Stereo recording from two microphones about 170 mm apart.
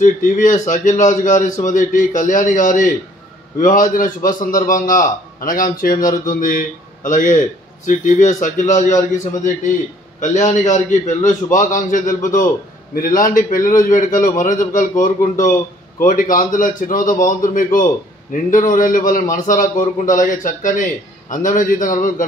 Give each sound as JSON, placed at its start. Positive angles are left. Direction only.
{"t": 0.0, "sound": "a man's voice", "side_deg": 50}